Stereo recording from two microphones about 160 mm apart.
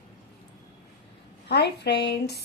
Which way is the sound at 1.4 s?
90° left.